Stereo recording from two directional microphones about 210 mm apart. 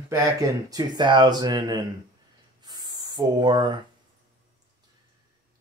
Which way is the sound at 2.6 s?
20° right (ahead or behind).